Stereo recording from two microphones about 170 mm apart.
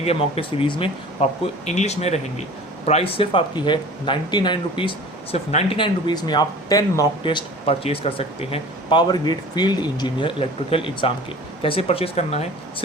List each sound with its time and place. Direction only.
0.0 s speech: 35° left (ahead or behind)